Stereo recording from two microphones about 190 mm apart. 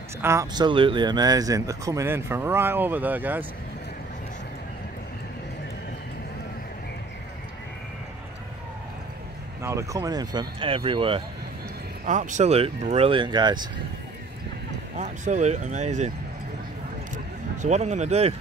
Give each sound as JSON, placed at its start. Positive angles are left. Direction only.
{"t": 0.2, "sound": "speech", "side_deg": -15}
{"t": 9.6, "sound": "speech", "side_deg": -15}
{"t": 12.1, "sound": "speech", "side_deg": -40}
{"t": 15.0, "sound": "speech", "side_deg": -40}
{"t": 17.1, "sound": "vehicle", "side_deg": -40}